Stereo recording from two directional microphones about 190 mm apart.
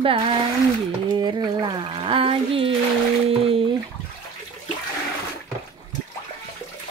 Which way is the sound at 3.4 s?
30° right (ahead or behind).